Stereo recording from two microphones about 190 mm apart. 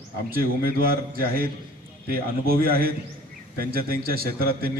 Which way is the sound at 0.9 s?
50° right (ahead or behind).